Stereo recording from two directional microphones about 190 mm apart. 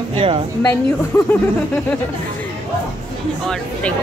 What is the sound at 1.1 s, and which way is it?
Speech, 10° left (ahead or behind).